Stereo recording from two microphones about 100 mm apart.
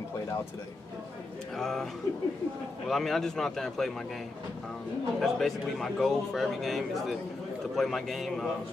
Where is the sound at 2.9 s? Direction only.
Centre (ahead or behind).